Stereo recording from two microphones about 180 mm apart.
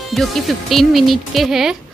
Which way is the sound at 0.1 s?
Centre (ahead or behind).